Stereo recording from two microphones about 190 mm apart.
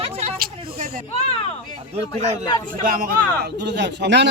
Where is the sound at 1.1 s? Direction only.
30° left (ahead or behind).